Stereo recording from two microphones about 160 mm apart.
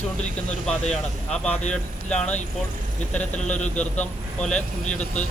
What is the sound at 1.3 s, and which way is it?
A man's voice, 5° left (ahead or behind).